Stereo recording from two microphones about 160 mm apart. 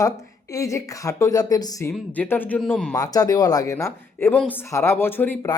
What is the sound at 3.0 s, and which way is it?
Speech, 25° left (ahead or behind).